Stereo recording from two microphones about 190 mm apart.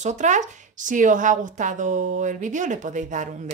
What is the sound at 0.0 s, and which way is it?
Speech, 40° right (ahead or behind).